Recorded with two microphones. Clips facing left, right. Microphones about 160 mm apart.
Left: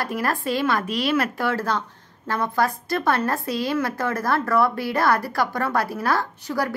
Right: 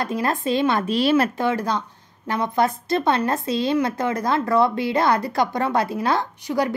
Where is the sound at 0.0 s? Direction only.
20° right (ahead or behind).